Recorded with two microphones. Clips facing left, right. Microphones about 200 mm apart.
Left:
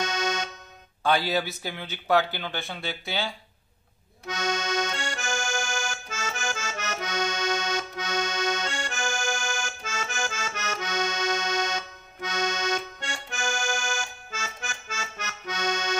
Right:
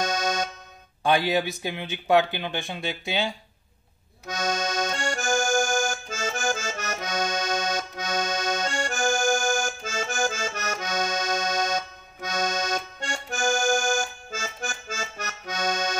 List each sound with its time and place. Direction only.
0.0 s accordion: 40° right (ahead or behind)
1.0 s speech: 15° right (ahead or behind)
4.3 s accordion: 40° right (ahead or behind)
9.2 s accordion: 50° right (ahead or behind)